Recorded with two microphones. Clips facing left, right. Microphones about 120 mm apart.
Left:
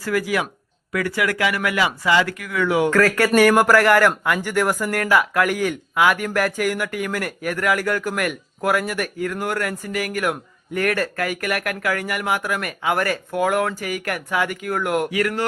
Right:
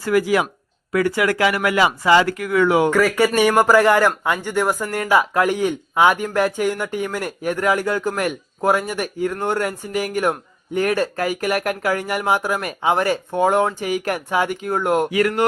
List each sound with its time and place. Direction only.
0.0 s speech: 25° right (ahead or behind)
2.9 s speech: 15° right (ahead or behind)